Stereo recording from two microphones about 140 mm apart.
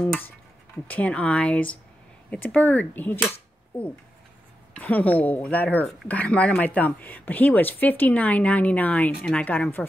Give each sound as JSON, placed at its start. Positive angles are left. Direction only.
{"t": 0.0, "sound": "speech", "side_deg": 10}